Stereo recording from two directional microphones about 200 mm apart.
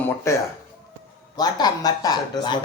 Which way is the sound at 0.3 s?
15° left (ahead or behind).